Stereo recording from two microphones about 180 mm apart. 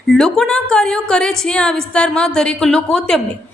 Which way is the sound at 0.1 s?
5° left (ahead or behind).